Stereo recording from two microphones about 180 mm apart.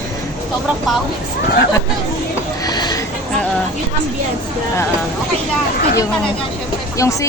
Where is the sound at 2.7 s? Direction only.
20° left (ahead or behind).